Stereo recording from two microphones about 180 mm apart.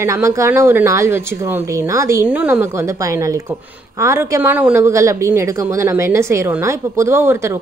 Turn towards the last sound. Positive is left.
turn(degrees=-15)  # may be behind; listen again after turning